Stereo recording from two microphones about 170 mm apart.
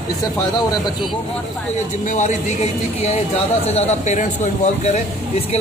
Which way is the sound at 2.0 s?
45° left (ahead or behind).